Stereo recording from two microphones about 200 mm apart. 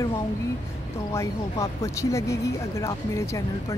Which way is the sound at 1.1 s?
15° left (ahead or behind).